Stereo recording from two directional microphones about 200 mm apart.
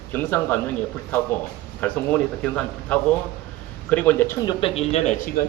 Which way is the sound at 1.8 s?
5° left (ahead or behind).